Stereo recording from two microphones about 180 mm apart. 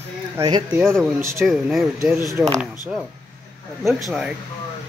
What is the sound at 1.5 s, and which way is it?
Speech, centre (ahead or behind).